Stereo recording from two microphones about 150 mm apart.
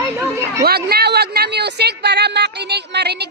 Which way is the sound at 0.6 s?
90° right.